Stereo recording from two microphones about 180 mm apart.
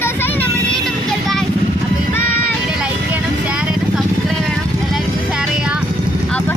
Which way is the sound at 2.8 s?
5° right (ahead or behind).